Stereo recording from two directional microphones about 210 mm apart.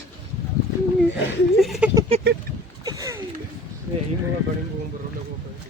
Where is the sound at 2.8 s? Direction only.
15° right (ahead or behind).